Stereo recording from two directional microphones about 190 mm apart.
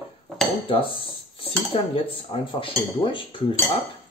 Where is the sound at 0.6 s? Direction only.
30° left (ahead or behind).